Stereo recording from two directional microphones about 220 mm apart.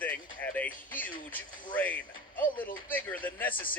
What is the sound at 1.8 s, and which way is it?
Speech, 5° left (ahead or behind).